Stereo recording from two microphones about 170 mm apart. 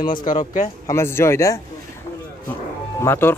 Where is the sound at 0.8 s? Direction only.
15° left (ahead or behind).